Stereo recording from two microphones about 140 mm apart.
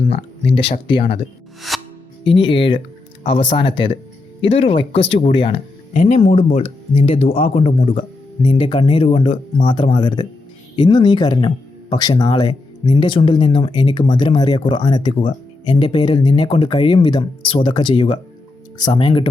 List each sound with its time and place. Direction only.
0.1 s speech: 40° left (ahead or behind)
1.7 s music: centre (ahead or behind)
2.2 s speech: 40° left (ahead or behind)
5.9 s speech: 55° left (ahead or behind); by 19.3 s 35° left (ahead or behind)